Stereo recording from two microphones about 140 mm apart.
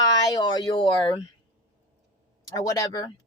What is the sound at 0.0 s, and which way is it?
Speech, 30° left (ahead or behind).